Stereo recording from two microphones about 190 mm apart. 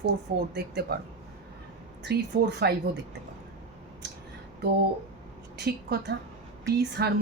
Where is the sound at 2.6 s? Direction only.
60° right (ahead or behind).